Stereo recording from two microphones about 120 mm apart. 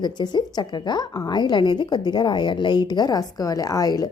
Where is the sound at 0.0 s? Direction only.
35° left (ahead or behind).